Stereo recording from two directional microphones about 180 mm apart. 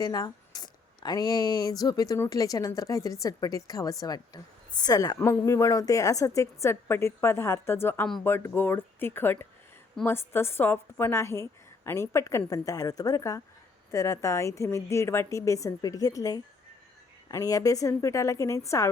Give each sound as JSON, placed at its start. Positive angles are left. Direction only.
{"t": 0.0, "sound": "a woman's voice", "side_deg": 20}